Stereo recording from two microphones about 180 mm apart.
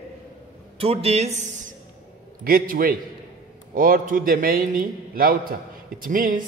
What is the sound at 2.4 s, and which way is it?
A man's voice, 50° right (ahead or behind).